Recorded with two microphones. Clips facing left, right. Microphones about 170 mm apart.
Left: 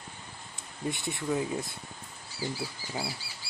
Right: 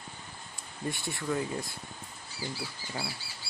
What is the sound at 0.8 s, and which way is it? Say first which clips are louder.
Speech: left 2 dB; 20° left (ahead or behind).